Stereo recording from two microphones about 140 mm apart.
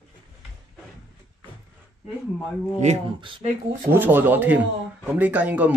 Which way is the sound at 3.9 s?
15° right (ahead or behind).